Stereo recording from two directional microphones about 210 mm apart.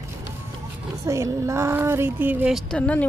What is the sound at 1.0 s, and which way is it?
A woman's voice, 15° right (ahead or behind).